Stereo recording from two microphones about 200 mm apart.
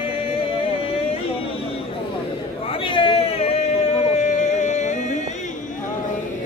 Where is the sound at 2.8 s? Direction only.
25° left (ahead or behind).